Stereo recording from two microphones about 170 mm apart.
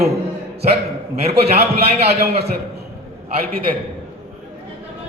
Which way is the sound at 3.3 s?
60° right (ahead or behind).